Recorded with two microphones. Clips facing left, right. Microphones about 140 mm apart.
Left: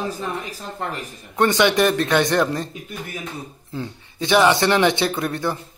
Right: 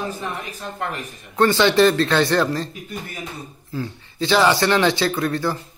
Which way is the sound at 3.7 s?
20° left (ahead or behind).